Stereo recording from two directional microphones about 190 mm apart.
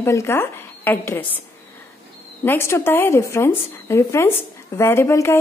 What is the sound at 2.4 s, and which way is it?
A woman's voice, 15° left (ahead or behind).